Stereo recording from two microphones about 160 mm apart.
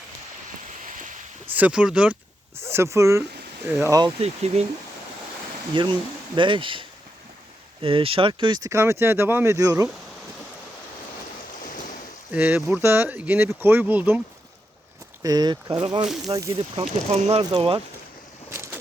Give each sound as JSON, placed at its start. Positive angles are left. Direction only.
{"t": 0.9, "sound": "a sound", "side_deg": -55}
{"t": 1.5, "sound": "speech", "side_deg": -10}
{"t": 4.0, "sound": "speech", "side_deg": -40}
{"t": 5.7, "sound": "speech", "side_deg": -30}
{"t": 11.6, "sound": "waves", "side_deg": 55}
{"t": 12.3, "sound": "speech", "side_deg": -10}
{"t": 15.2, "sound": "speech", "side_deg": -25}
{"t": 16.0, "sound": "speech", "side_deg": 0}
{"t": 16.3, "sound": "speech", "side_deg": -20}
{"t": 16.8, "sound": "speech", "side_deg": -45}
{"t": 18.5, "sound": "vehicle", "side_deg": -15}